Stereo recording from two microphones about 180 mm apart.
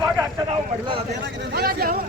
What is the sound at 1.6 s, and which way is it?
Speech, 60° right (ahead or behind).